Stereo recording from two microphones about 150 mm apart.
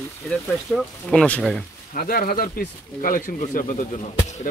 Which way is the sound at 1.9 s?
75° left (ahead or behind).